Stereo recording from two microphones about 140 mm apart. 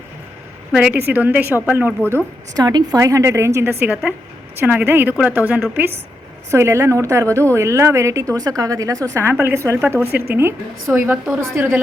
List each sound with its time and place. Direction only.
0.7 s a woman's voice: 10° right (ahead or behind)
2.0 s a woman's voice: 20° right (ahead or behind)